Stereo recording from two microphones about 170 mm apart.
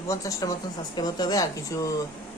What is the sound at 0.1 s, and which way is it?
A woman's voice, 20° left (ahead or behind).